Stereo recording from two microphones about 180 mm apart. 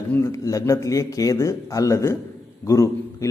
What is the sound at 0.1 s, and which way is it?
Speech, 15° left (ahead or behind).